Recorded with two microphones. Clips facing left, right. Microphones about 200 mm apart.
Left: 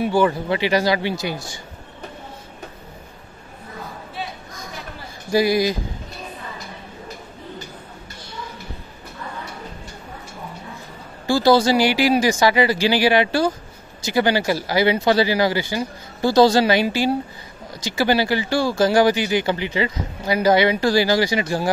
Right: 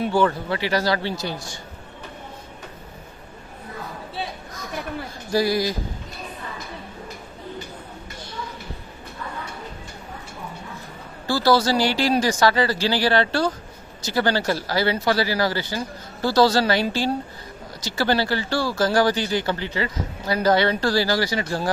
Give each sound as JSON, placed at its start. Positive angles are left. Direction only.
{"t": 0.0, "sound": "speech", "side_deg": 10}
{"t": 5.3, "sound": "speech", "side_deg": 15}
{"t": 11.2, "sound": "speech", "side_deg": 15}